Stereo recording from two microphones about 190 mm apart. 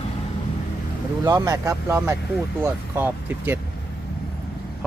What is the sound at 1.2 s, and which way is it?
Speech, 20° right (ahead or behind).